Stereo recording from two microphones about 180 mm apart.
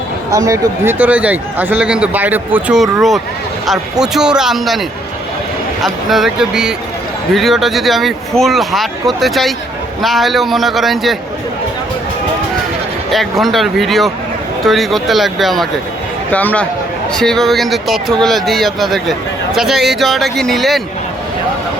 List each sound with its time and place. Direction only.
0.3 s a man's voice: 15° right (ahead or behind); by 11.2 s centre (ahead or behind)
13.1 s a man's voice: centre (ahead or behind)